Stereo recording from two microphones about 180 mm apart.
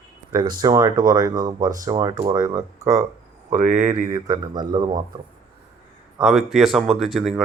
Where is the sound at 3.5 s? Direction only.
45° right (ahead or behind).